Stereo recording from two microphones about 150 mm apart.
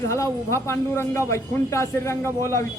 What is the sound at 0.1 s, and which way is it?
Speech, 20° left (ahead or behind).